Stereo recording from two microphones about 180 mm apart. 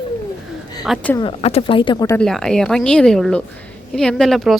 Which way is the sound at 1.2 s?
35° left (ahead or behind).